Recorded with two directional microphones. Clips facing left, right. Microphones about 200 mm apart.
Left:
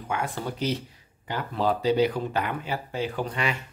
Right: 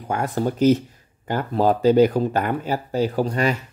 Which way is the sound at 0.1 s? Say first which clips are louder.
Right 7 dB; 40° right (ahead or behind).